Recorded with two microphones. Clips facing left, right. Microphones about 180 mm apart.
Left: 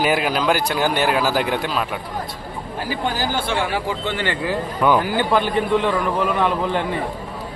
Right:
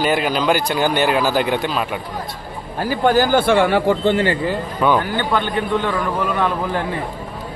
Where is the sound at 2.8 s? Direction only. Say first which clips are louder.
Right 8 dB; 50° right (ahead or behind).